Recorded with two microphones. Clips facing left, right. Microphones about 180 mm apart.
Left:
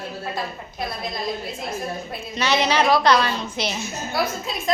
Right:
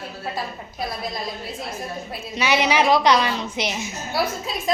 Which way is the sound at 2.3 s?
15° right (ahead or behind).